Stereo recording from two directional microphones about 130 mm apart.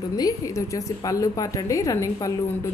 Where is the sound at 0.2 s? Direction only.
25° left (ahead or behind).